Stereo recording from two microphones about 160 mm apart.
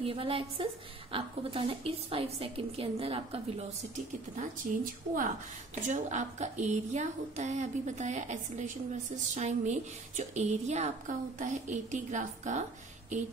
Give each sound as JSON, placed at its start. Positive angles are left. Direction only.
{"t": 0.0, "sound": "a woman's voice", "side_deg": -35}
{"t": 3.9, "sound": "a woman's voice", "side_deg": -55}